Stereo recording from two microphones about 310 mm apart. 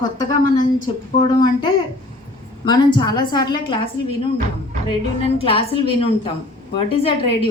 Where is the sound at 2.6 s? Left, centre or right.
Centre.